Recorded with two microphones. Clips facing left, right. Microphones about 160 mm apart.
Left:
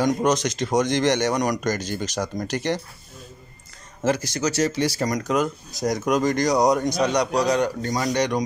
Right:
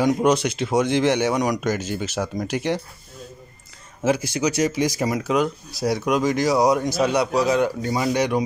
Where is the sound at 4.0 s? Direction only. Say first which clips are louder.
Right 2 dB; 10° right (ahead or behind).